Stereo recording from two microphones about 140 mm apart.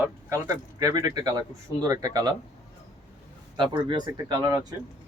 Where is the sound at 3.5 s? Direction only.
35° right (ahead or behind).